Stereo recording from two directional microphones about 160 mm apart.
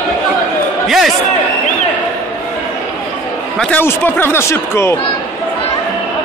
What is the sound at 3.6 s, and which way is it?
Speech, 10° left (ahead or behind).